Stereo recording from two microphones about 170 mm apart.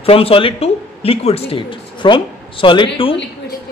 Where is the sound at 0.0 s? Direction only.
35° left (ahead or behind).